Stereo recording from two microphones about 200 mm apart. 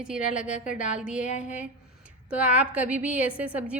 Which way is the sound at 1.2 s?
35° left (ahead or behind).